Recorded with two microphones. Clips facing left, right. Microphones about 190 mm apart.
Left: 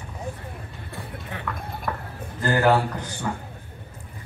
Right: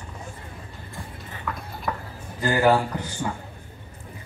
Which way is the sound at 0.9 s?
65° left (ahead or behind).